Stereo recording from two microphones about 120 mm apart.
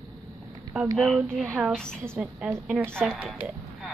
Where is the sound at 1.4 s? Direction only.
15° right (ahead or behind).